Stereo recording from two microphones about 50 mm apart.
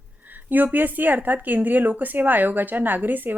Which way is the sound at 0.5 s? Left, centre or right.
Right.